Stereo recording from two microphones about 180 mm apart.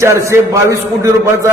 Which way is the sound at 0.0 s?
15° right (ahead or behind).